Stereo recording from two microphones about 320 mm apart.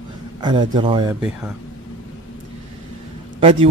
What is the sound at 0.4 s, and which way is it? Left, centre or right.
Speech, centre.